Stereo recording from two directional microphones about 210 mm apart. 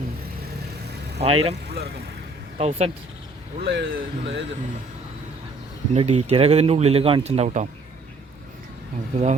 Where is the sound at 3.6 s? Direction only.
55° right (ahead or behind).